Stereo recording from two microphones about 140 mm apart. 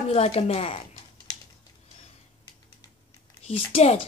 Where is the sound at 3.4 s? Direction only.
45° left (ahead or behind).